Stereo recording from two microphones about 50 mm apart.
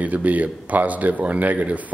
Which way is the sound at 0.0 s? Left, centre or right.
Right.